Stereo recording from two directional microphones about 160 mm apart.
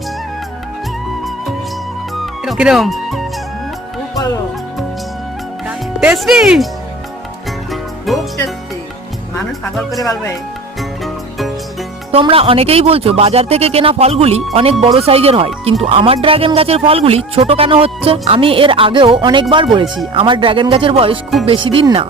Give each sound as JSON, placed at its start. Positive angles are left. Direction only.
{"t": 2.2, "sound": "music", "side_deg": 0}
{"t": 5.6, "sound": "speech", "side_deg": -5}
{"t": 7.7, "sound": "music", "side_deg": 0}
{"t": 9.4, "sound": "speech", "side_deg": 0}
{"t": 10.8, "sound": "music", "side_deg": 0}
{"t": 12.1, "sound": "speech", "side_deg": -35}